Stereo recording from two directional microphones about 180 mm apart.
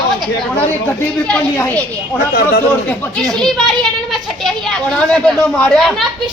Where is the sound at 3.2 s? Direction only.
Centre (ahead or behind).